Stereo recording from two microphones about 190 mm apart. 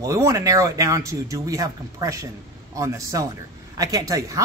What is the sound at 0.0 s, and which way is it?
A man's voice, 15° right (ahead or behind).